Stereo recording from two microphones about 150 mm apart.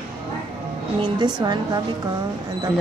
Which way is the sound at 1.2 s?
30° right (ahead or behind).